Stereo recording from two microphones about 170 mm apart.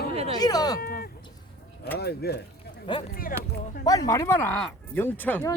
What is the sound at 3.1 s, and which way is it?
Speech, 60° left (ahead or behind).